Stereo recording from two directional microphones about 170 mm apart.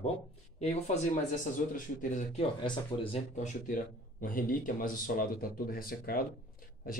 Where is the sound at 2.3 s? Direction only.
30° left (ahead or behind).